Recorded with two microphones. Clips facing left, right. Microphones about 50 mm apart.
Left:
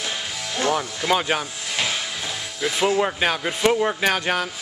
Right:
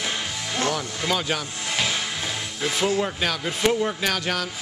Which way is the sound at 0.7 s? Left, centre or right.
Left.